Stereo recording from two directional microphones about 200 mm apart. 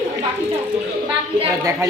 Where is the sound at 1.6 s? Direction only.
15° right (ahead or behind).